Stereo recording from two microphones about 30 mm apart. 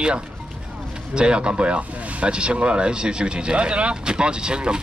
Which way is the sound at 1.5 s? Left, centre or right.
Right.